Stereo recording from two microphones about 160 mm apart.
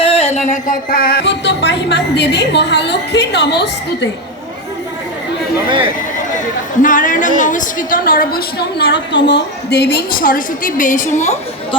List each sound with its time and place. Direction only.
0.0 s music: 40° left (ahead or behind); by 4.1 s 90° left
6.8 s a woman's voice: 55° left (ahead or behind)